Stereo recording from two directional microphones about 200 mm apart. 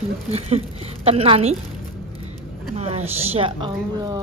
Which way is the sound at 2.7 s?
35° right (ahead or behind).